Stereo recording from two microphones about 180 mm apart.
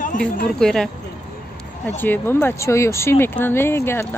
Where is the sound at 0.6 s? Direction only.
5° left (ahead or behind).